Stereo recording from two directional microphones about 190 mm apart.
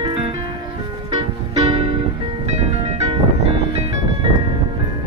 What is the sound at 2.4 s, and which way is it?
Music, 35° right (ahead or behind).